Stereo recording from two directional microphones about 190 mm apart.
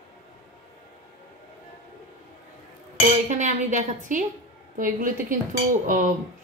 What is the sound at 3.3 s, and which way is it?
A woman's voice, 40° right (ahead or behind).